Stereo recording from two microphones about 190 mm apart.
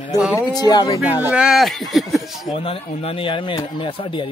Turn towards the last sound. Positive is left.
turn(degrees=25)  # may be behind; listen again after turning